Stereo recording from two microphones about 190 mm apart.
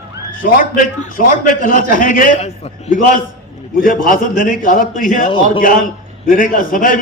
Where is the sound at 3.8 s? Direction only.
45° left (ahead or behind).